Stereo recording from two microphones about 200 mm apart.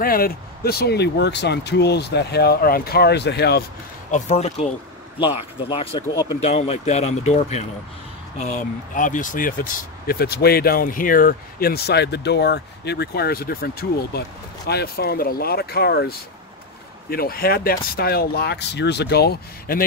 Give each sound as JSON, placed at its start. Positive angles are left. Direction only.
{"t": 0.0, "sound": "speech", "side_deg": 45}
{"t": 4.1, "sound": "speech", "side_deg": 30}
{"t": 6.4, "sound": "speech", "side_deg": 30}